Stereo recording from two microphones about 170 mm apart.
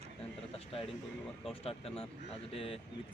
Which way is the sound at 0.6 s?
35° left (ahead or behind).